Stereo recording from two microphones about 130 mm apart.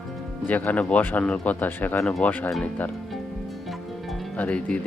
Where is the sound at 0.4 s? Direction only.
15° left (ahead or behind).